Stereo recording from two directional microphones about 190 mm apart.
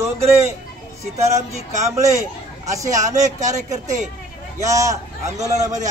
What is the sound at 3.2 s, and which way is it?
Speech, 40° right (ahead or behind).